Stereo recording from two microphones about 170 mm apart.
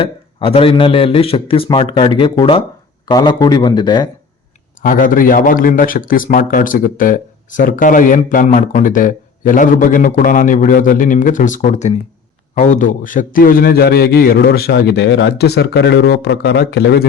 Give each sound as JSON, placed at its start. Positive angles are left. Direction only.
{"t": 0.0, "sound": "a man's voice", "side_deg": 30}
{"t": 4.8, "sound": "a man's voice", "side_deg": 55}